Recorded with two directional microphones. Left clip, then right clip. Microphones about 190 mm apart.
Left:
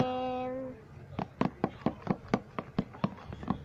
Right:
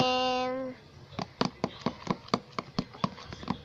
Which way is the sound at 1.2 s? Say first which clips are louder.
Right 1 dB; 10° right (ahead or behind).